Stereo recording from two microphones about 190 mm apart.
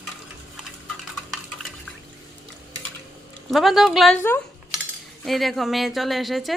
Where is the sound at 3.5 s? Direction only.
Centre (ahead or behind).